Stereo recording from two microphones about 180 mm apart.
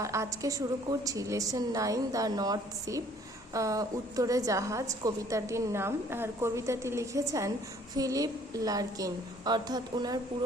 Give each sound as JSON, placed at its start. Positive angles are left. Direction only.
{"t": 0.0, "sound": "a woman's voice", "side_deg": -15}